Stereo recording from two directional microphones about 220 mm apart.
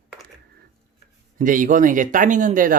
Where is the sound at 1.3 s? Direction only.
35° right (ahead or behind).